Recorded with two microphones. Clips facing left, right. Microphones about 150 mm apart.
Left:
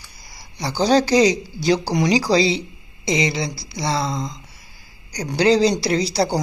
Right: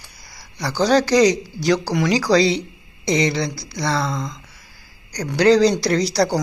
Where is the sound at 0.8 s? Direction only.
30° left (ahead or behind).